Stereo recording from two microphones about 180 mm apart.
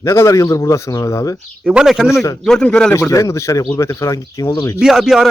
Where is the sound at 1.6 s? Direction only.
5° right (ahead or behind); by 4.8 s 20° left (ahead or behind).